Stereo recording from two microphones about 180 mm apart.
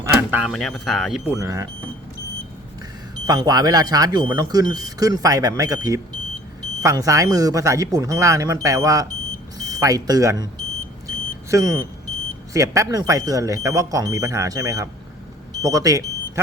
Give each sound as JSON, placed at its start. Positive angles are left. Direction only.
{"t": 0.2, "sound": "speech", "side_deg": -10}
{"t": 1.4, "sound": "speech", "side_deg": -20}
{"t": 3.2, "sound": "speech", "side_deg": -20}
{"t": 11.5, "sound": "speech", "side_deg": -20}